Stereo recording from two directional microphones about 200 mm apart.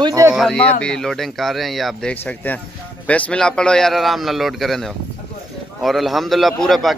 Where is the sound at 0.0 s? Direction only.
15° right (ahead or behind).